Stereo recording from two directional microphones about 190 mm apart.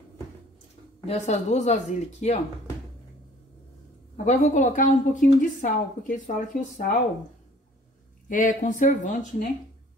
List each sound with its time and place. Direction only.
1.0 s a woman's voice: 35° left (ahead or behind)
4.3 s a woman's voice: 40° left (ahead or behind)
8.3 s speech: 45° left (ahead or behind)